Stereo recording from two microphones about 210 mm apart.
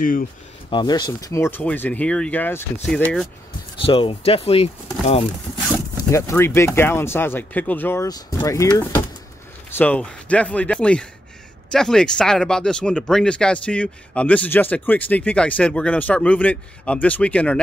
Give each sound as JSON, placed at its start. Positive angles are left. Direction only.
{"t": 0.7, "sound": "speech", "side_deg": 20}
{"t": 3.8, "sound": "speech", "side_deg": 25}
{"t": 6.0, "sound": "speech", "side_deg": 15}